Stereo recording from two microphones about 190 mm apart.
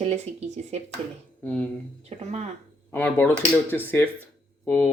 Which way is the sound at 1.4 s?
5° left (ahead or behind).